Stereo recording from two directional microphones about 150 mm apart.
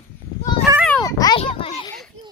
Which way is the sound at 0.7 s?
20° right (ahead or behind).